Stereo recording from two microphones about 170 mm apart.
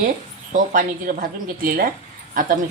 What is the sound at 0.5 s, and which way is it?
Speech, 50° right (ahead or behind).